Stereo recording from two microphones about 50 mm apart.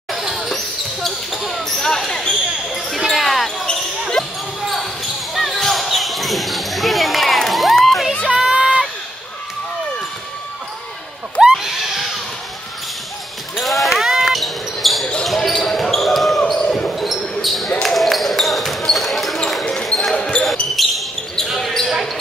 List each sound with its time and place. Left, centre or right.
0.2 s basketball bounce: centre
3.1 s basketball bounce: centre
8.3 s run: centre
11.4 s screaming: centre
13.6 s basketball bounce: centre
16.9 s basketball bounce: centre
20.2 s basketball bounce: centre
20.8 s basketball bounce: centre